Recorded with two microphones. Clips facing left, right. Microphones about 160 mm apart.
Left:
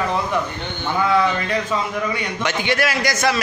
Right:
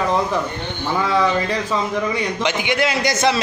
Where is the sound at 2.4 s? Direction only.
15° right (ahead or behind).